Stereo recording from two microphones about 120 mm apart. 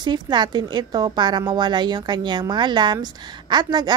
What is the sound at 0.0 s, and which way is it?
A woman's voice, 40° right (ahead or behind).